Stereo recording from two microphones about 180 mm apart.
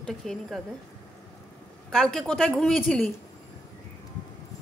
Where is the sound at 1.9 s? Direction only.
5° left (ahead or behind).